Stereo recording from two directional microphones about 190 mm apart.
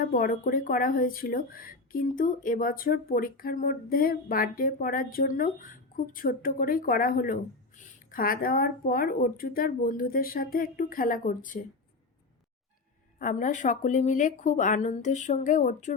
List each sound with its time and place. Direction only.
0.0 s speech: 50° left (ahead or behind)
13.1 s speech: 45° left (ahead or behind)